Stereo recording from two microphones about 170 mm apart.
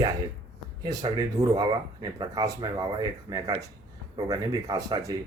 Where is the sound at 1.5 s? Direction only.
20° right (ahead or behind).